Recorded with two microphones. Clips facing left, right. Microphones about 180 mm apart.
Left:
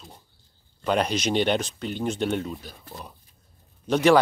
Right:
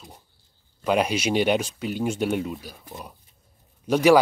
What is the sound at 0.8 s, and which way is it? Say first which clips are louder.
Speech: right 1 dB; 10° right (ahead or behind).